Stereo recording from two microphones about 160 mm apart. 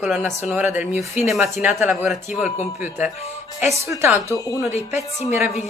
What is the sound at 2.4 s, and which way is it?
Speech, 50° left (ahead or behind).